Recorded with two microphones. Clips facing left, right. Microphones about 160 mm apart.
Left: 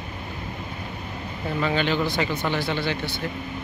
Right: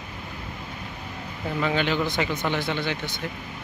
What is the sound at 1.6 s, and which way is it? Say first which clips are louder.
Speech: left 1 dB; 10° right (ahead or behind).